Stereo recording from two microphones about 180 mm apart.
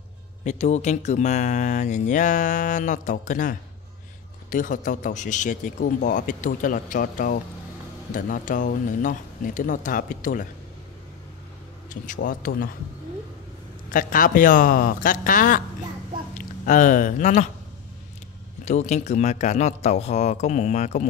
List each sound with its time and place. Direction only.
0.4 s speech: 40° left (ahead or behind)
11.9 s speech: 45° left (ahead or behind)
13.8 s speech: 50° left (ahead or behind)
16.6 s speech: 45° left (ahead or behind)
18.7 s speech: 40° left (ahead or behind)